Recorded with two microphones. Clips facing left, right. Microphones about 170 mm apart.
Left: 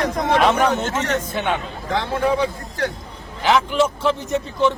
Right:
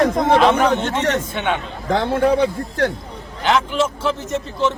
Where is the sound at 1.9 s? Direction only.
55° right (ahead or behind).